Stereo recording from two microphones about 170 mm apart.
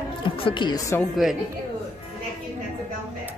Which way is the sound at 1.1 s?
Centre (ahead or behind).